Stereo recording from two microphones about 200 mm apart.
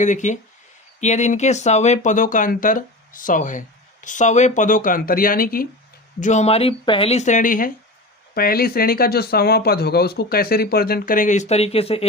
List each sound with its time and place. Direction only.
0.0 s speech: 35° left (ahead or behind)